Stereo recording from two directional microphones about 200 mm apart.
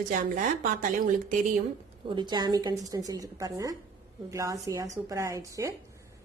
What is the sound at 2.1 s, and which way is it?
A woman's voice, 20° right (ahead or behind).